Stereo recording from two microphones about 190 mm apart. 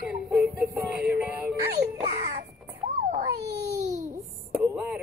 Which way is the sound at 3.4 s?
60° right (ahead or behind).